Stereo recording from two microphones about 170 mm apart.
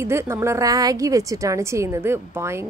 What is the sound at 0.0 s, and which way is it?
A woman's voice, 15° right (ahead or behind).